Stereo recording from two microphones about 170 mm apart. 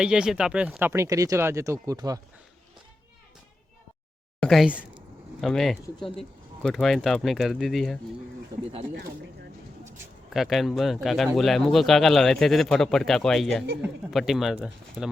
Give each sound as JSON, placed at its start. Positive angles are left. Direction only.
{"t": 0.0, "sound": "speech", "side_deg": -5}
{"t": 4.4, "sound": "speech", "side_deg": 0}
{"t": 10.3, "sound": "speech", "side_deg": 0}